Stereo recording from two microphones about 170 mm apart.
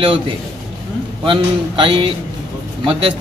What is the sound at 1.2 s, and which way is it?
Speech, 30° right (ahead or behind).